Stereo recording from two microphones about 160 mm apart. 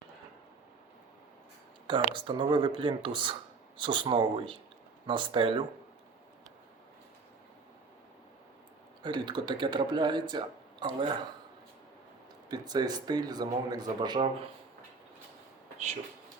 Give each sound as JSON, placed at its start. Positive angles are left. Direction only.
{"t": 1.9, "sound": "speech", "side_deg": -30}
{"t": 9.0, "sound": "speech", "side_deg": -30}
{"t": 12.5, "sound": "speech", "side_deg": -25}